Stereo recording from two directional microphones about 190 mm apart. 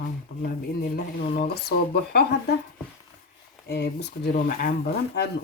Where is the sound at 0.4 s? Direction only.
50° left (ahead or behind).